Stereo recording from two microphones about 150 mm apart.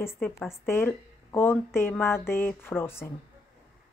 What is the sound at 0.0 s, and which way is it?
Speech, 15° left (ahead or behind).